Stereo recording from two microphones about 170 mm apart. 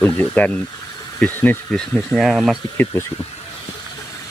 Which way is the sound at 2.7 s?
10° left (ahead or behind).